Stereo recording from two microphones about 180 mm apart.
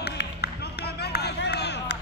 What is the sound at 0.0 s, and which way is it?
Music, 65° left (ahead or behind).